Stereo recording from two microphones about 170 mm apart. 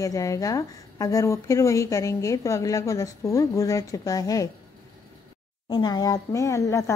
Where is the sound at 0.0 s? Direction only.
20° left (ahead or behind).